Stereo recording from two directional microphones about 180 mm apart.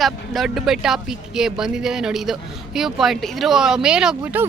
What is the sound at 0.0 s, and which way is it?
Speech, centre (ahead or behind).